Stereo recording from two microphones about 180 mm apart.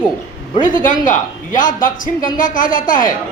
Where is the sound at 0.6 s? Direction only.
45° left (ahead or behind).